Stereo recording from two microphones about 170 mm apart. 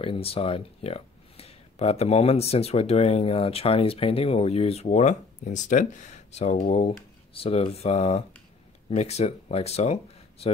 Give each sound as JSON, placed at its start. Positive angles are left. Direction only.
{"t": 0.0, "sound": "speech", "side_deg": 35}